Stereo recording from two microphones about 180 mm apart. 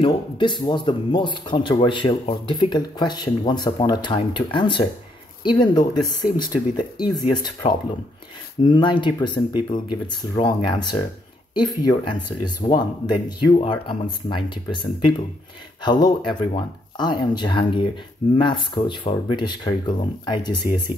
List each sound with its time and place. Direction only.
0.0 s speech: 25° left (ahead or behind)
7.6 s speech: 35° left (ahead or behind)
8.6 s speech: 25° left (ahead or behind)